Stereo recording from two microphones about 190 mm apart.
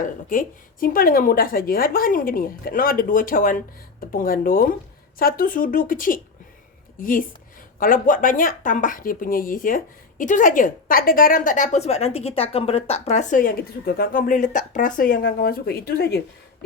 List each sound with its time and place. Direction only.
0.0 s speech: 45° left (ahead or behind)